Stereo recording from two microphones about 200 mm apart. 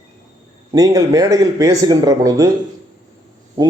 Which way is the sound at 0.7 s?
15° right (ahead or behind).